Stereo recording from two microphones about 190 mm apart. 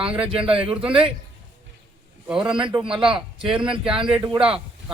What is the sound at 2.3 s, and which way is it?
Speech, 5° right (ahead or behind).